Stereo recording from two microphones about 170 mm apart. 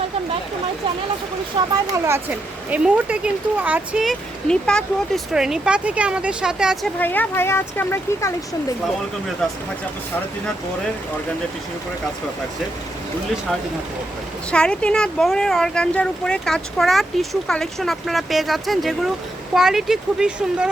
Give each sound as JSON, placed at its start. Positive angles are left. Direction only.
{"t": 1.5, "sound": "speech", "side_deg": -30}
{"t": 2.6, "sound": "speech", "side_deg": -10}
{"t": 7.0, "sound": "speech", "side_deg": 10}
{"t": 9.4, "sound": "speech", "side_deg": 0}
{"t": 14.5, "sound": "speech", "side_deg": 5}